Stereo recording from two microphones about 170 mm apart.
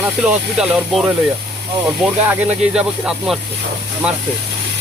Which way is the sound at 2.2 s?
5° right (ahead or behind).